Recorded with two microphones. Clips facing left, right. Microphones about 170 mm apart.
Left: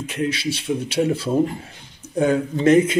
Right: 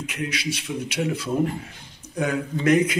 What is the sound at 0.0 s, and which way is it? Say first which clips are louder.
Speech: left 5 dB; 30° left (ahead or behind).